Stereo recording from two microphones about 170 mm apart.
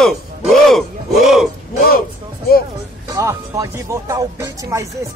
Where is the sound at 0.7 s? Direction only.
Centre (ahead or behind).